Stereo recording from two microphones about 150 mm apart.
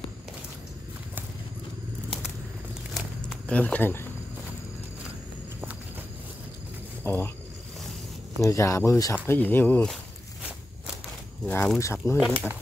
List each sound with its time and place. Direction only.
2.9 s a sound: 5° left (ahead or behind)
7.0 s speech: 15° left (ahead or behind)
8.4 s speech: 20° left (ahead or behind)
11.4 s speech: 15° left (ahead or behind)